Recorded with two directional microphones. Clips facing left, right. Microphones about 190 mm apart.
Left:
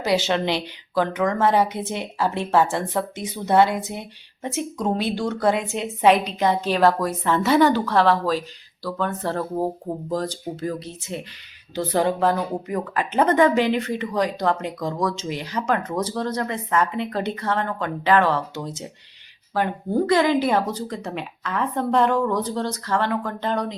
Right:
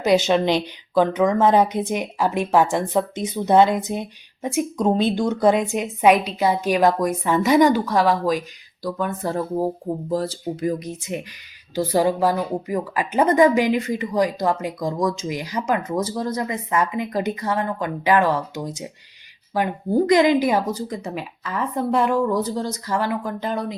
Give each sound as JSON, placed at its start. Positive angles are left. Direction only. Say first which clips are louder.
{"t": 0.0, "sound": "a woman's voice", "louder": "right 4 dB", "side_deg": -20}